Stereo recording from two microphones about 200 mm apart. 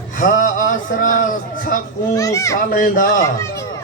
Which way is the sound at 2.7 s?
45° left (ahead or behind).